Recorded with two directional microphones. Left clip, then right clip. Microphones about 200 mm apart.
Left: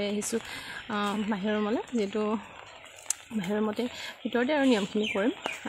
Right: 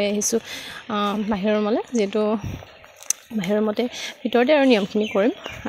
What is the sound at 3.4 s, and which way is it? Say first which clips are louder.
Speech: right 8 dB; 30° right (ahead or behind).